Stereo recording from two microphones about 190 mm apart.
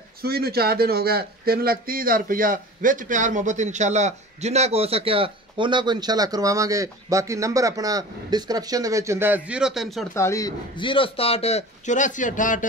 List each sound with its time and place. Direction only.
0.2 s speech: 55° right (ahead or behind); by 10.0 s centre (ahead or behind)
10.1 s a man's voice: 15° left (ahead or behind); by 12.6 s 45° left (ahead or behind)